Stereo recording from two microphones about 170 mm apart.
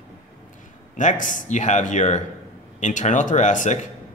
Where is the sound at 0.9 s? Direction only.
50° left (ahead or behind).